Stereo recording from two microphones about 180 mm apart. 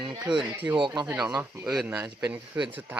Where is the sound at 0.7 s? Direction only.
25° right (ahead or behind).